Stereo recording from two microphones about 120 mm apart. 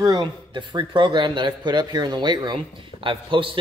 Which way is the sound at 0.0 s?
35° right (ahead or behind).